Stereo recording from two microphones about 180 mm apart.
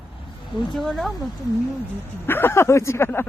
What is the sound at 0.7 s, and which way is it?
Speech, centre (ahead or behind).